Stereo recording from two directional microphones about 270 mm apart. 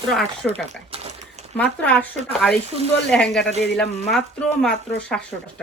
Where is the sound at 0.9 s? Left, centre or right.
Right.